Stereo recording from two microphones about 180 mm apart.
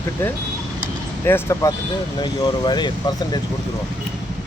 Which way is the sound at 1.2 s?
15° left (ahead or behind).